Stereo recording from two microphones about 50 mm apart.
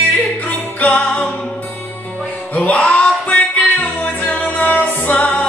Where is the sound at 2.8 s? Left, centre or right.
Left.